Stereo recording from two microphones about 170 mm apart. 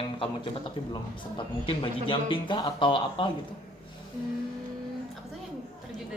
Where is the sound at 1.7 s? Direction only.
30° left (ahead or behind).